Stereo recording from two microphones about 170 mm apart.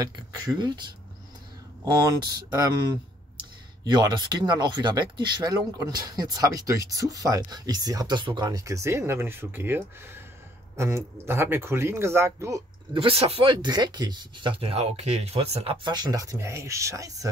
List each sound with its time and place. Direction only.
0.0 s speech: 25° right (ahead or behind)
2.0 s speech: 25° right (ahead or behind)
12.9 s speech: 35° right (ahead or behind)